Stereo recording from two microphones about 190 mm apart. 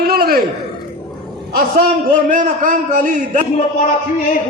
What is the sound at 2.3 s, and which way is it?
A man's voice, 45° right (ahead or behind).